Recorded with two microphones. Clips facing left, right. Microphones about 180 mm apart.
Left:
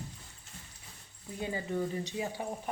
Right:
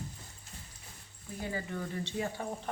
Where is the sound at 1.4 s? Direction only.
20° left (ahead or behind).